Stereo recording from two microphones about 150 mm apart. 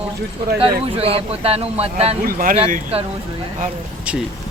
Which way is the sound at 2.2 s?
70° right (ahead or behind).